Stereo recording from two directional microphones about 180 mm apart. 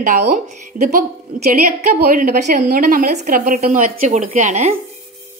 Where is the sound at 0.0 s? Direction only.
45° right (ahead or behind).